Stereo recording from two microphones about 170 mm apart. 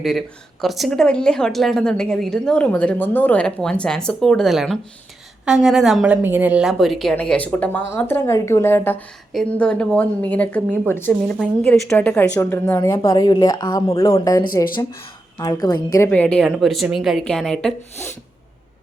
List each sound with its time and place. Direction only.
0.0 s a woman's voice: centre (ahead or behind)